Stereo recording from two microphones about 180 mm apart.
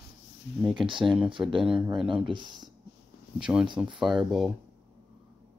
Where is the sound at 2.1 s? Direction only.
25° right (ahead or behind).